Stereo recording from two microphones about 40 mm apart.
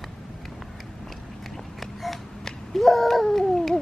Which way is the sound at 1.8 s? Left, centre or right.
Centre.